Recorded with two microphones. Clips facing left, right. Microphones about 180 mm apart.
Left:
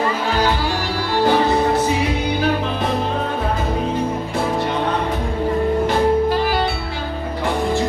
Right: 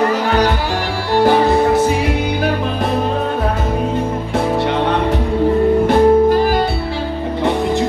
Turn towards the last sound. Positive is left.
turn(degrees=-45)  # may be behind; listen again after turning